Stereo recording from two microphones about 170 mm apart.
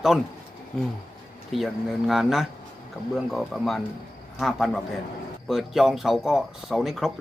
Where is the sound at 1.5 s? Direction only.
Centre (ahead or behind).